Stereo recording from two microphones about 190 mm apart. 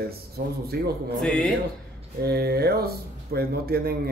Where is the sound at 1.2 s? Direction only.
5° left (ahead or behind).